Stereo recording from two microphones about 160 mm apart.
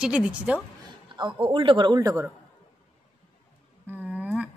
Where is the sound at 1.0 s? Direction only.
30° right (ahead or behind).